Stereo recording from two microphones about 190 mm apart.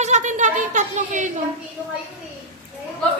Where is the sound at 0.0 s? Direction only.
40° right (ahead or behind).